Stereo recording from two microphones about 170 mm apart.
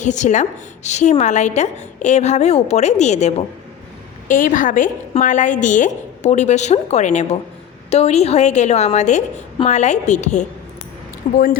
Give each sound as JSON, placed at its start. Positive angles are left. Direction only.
{"t": 0.0, "sound": "a woman's voice", "side_deg": 45}
{"t": 11.2, "sound": "a woman's voice", "side_deg": 55}